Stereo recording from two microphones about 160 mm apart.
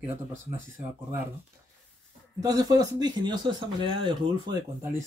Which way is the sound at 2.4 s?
25° right (ahead or behind).